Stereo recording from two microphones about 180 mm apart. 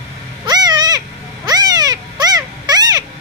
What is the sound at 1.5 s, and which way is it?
Cat, 20° right (ahead or behind).